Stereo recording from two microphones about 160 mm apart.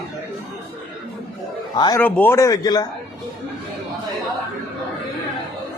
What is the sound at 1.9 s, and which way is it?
Speech, 15° left (ahead or behind).